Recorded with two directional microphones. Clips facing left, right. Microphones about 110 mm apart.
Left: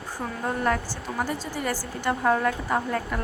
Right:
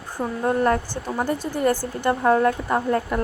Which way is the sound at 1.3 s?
50° right (ahead or behind).